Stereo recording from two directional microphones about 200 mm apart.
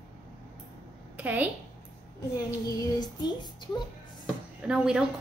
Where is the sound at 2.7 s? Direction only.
20° left (ahead or behind).